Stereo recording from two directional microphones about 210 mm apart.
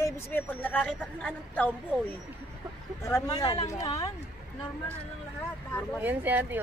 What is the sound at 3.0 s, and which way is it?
A woman's voice, 15° left (ahead or behind).